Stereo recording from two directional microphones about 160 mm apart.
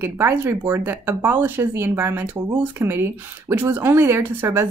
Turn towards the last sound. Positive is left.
turn(degrees=-15)  # may be behind; listen again after turning